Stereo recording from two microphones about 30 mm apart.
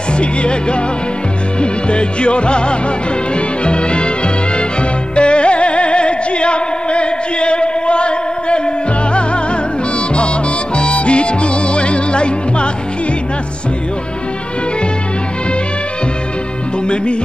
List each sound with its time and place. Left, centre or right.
0.2 s music: left
5.1 s music: left
10.8 s music: left
16.8 s music: left